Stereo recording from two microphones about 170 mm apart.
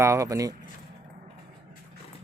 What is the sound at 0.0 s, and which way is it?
Speech, 15° right (ahead or behind).